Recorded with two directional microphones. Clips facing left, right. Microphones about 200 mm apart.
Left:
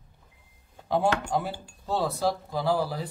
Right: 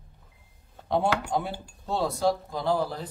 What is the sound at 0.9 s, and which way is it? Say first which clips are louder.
Speech: even; centre (ahead or behind).